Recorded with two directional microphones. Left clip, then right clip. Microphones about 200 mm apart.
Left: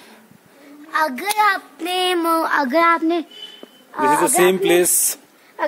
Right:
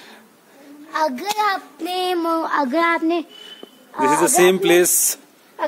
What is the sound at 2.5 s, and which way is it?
Speech, 40° left (ahead or behind).